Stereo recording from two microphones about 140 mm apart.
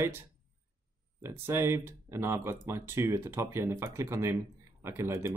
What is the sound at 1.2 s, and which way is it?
Speech, 15° right (ahead or behind).